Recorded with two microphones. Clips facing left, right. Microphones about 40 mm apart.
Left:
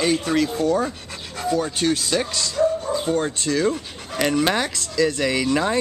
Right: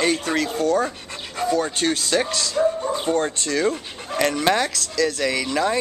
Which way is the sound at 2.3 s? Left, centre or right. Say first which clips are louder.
Even; centre.